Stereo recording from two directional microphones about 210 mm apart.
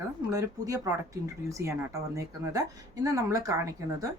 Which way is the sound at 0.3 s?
15° right (ahead or behind).